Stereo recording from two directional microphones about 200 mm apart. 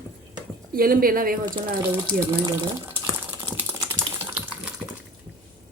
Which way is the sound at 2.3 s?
15° right (ahead or behind).